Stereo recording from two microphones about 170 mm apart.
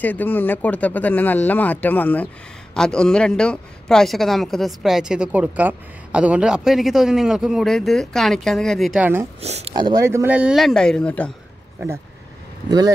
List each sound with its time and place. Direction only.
0.0 s speech: 10° left (ahead or behind)
9.0 s speech: 15° right (ahead or behind)
9.4 s speech: 40° right (ahead or behind)
9.8 s speech: 25° right (ahead or behind)
10.0 s speech: 15° right (ahead or behind); by 11.3 s 5° left (ahead or behind)
12.6 s speech: 20° right (ahead or behind)